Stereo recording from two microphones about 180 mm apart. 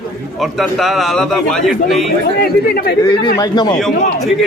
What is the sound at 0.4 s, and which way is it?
A man's voice, centre (ahead or behind).